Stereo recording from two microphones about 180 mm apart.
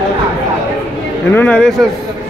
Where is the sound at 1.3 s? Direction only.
10° left (ahead or behind).